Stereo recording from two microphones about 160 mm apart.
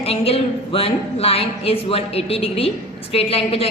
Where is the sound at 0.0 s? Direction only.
40° left (ahead or behind).